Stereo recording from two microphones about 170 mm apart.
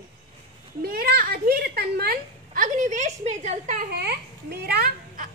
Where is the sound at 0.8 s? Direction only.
65° right (ahead or behind); by 3.8 s 45° right (ahead or behind).